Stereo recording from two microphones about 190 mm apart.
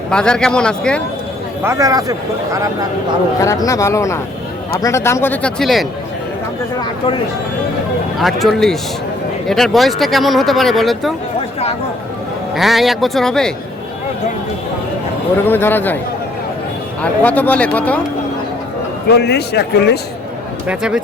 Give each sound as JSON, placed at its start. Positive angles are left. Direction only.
{"t": 0.1, "sound": "speech", "side_deg": 5}
{"t": 1.6, "sound": "a man's voice", "side_deg": -15}
{"t": 3.4, "sound": "speech", "side_deg": 15}
{"t": 8.2, "sound": "speech", "side_deg": 0}
{"t": 11.3, "sound": "a sound", "side_deg": 35}
{"t": 12.5, "sound": "speech", "side_deg": 0}
{"t": 15.4, "sound": "speech", "side_deg": 10}
{"t": 17.0, "sound": "speech", "side_deg": 10}
{"t": 19.0, "sound": "a man's voice", "side_deg": 60}
{"t": 20.7, "sound": "speech", "side_deg": -5}